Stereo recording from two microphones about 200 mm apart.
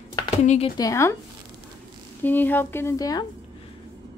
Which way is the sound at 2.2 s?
10° left (ahead or behind).